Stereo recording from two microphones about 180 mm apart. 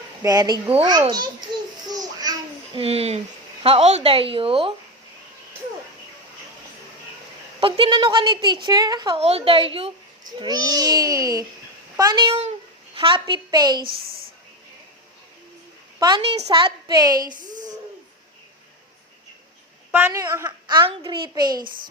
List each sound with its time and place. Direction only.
0.2 s a child's voice: 20° right (ahead or behind)
1.9 s child singing: 20° right (ahead or behind)
2.7 s a woman's voice: 35° right (ahead or behind)
7.6 s a child's voice: 25° right (ahead or behind)
9.2 s a child's voice: 35° right (ahead or behind)
12.3 s a sound: 35° right (ahead or behind)
16.0 s a woman's voice: 25° right (ahead or behind)
16.5 s child singing: 25° right (ahead or behind)
17.3 s a sound: 45° right (ahead or behind)
19.9 s a sound: 10° right (ahead or behind)
20.2 s speech: 15° right (ahead or behind)
20.7 s a child's voice: 25° right (ahead or behind)